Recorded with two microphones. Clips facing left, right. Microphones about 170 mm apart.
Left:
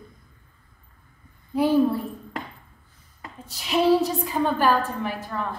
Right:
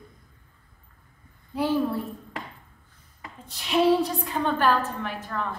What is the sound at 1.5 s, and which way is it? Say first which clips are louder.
Speech: left 5 dB; 15° left (ahead or behind).